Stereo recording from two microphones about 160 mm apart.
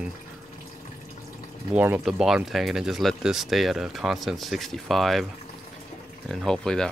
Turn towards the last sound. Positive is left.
turn(degrees=5)  # may be behind; listen again after turning